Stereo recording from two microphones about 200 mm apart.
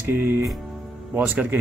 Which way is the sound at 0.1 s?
10° right (ahead or behind).